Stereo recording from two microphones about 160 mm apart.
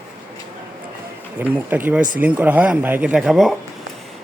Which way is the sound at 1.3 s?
10° right (ahead or behind).